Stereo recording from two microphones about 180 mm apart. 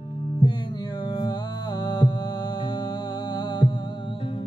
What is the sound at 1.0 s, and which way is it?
Music, 25° left (ahead or behind).